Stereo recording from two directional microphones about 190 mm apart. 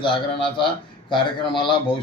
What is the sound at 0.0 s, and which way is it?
Speech, 25° left (ahead or behind).